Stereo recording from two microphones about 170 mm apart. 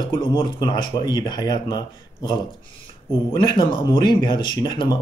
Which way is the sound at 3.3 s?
25° left (ahead or behind).